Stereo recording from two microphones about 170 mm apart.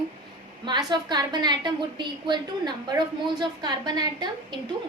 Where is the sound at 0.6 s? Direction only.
25° right (ahead or behind).